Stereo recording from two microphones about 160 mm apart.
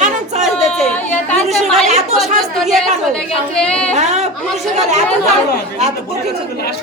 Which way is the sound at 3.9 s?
45° right (ahead or behind).